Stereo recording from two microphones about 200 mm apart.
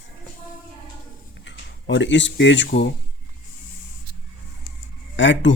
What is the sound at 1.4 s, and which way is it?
Speech, 65° left (ahead or behind).